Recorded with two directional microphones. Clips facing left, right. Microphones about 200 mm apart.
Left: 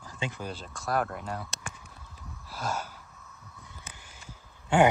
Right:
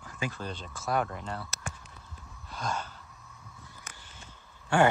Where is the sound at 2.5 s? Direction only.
5° left (ahead or behind).